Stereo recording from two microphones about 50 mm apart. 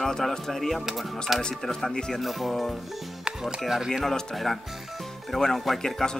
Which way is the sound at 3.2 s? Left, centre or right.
Centre.